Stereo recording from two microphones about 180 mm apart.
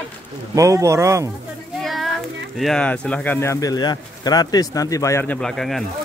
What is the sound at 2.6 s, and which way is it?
A man's voice, 5° left (ahead or behind).